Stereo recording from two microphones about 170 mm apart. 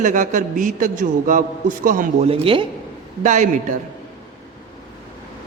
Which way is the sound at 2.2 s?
35° right (ahead or behind).